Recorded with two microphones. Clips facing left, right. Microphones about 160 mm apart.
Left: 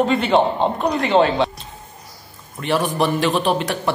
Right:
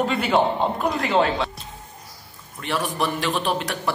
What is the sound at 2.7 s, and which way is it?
Speech, 30° left (ahead or behind).